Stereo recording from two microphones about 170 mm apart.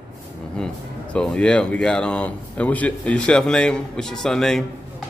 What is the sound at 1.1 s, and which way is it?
Speech, 5° left (ahead or behind).